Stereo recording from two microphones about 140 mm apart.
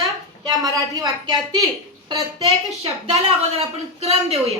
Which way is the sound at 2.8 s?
45° right (ahead or behind).